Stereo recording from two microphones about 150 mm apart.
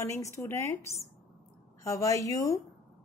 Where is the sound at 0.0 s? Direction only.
20° left (ahead or behind).